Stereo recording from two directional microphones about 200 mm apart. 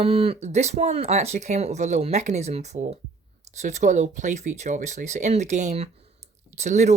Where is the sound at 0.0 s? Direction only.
30° right (ahead or behind).